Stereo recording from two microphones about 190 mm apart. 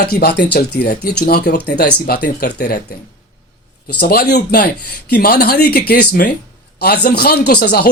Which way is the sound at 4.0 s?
55° left (ahead or behind).